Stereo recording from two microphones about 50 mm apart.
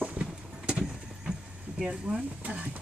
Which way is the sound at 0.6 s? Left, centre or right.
Centre.